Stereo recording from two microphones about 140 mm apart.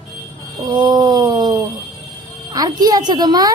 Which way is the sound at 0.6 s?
30° right (ahead or behind).